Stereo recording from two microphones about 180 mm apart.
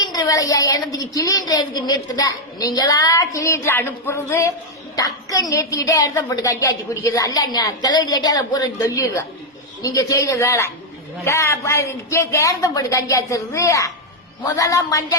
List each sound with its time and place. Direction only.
0.0 s a woman's voice: 20° left (ahead or behind)